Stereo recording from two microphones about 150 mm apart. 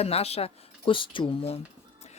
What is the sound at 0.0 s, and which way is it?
Speech, 45° left (ahead or behind).